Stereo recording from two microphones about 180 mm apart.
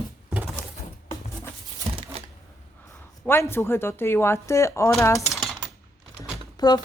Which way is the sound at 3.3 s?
10° left (ahead or behind).